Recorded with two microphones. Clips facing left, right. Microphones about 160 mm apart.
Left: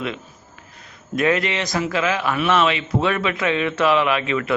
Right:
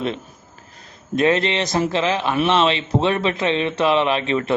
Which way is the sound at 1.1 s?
25° right (ahead or behind).